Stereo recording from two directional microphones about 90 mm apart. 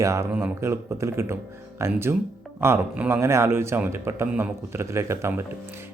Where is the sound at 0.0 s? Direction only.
35° right (ahead or behind).